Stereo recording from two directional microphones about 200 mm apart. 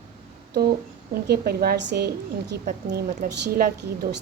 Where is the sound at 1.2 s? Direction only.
50° right (ahead or behind).